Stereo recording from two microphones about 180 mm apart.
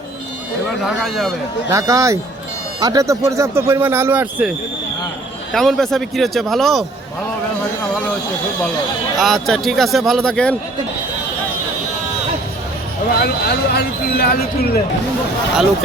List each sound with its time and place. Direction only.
0.9 s speech: centre (ahead or behind)
1.7 s speech: 15° right (ahead or behind)
5.5 s speech: centre (ahead or behind)
9.1 s speech: centre (ahead or behind)
13.1 s speech: 60° left (ahead or behind)